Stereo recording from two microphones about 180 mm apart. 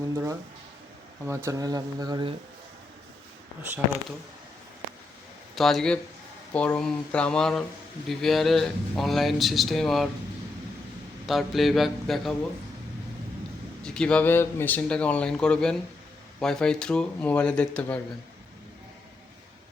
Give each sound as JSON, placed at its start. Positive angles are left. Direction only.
{"t": 0.0, "sound": "speech", "side_deg": -20}
{"t": 5.5, "sound": "speech", "side_deg": 0}
{"t": 11.3, "sound": "speech", "side_deg": 0}
{"t": 13.8, "sound": "speech", "side_deg": 5}